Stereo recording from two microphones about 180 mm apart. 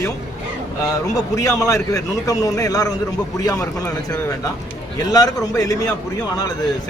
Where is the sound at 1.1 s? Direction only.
20° left (ahead or behind).